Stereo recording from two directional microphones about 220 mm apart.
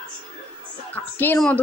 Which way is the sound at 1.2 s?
5° left (ahead or behind).